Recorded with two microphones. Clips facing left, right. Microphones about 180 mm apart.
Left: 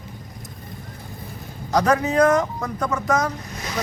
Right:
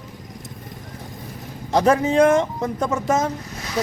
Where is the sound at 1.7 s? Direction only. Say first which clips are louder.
Right 2 dB; 25° right (ahead or behind).